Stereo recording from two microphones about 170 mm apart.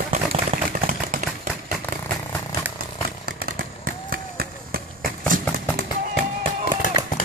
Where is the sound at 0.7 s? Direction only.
55° right (ahead or behind).